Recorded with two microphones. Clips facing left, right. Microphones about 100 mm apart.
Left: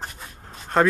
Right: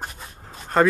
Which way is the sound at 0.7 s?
Centre (ahead or behind).